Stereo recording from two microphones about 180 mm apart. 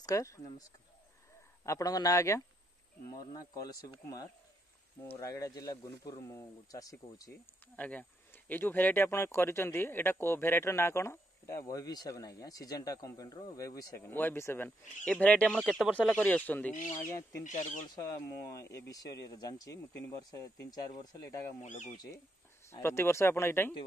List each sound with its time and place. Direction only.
0.0 s speech: 15° left (ahead or behind)
1.7 s speech: 20° left (ahead or behind)
7.8 s speech: 10° left (ahead or behind)
16.7 s speech: 45° left (ahead or behind)
17.8 s speech: 20° left (ahead or behind)
21.6 s speech: 45° left (ahead or behind)
22.7 s speech: 15° left (ahead or behind)